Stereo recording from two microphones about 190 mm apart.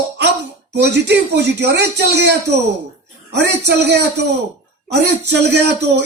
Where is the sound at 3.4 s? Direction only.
60° right (ahead or behind).